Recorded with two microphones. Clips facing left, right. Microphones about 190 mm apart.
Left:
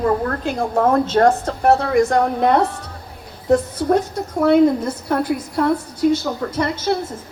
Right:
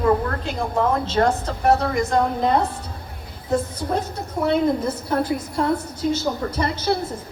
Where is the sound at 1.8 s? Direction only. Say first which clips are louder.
Left 4 dB; 60° left (ahead or behind).